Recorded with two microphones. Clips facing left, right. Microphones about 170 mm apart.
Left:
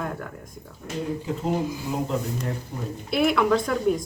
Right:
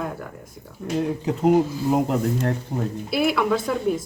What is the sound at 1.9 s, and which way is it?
Speech, 65° right (ahead or behind).